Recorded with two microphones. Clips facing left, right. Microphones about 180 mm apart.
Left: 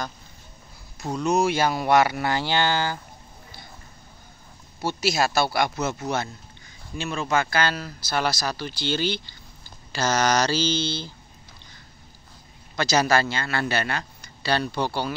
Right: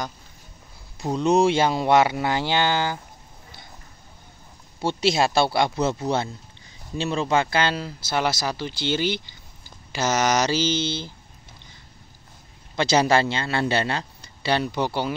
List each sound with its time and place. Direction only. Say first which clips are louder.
1.1 s a man's voice: right 3 dB; 30° right (ahead or behind)
5.0 s a man's voice: right 3 dB; 25° right (ahead or behind)
12.7 s a man's voice: right 2 dB; 25° right (ahead or behind)